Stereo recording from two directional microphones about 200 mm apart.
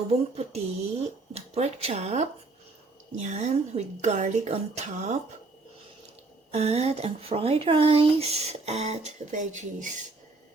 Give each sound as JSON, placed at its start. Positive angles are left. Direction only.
{"t": 0.1, "sound": "speech", "side_deg": -30}
{"t": 6.5, "sound": "speech", "side_deg": -30}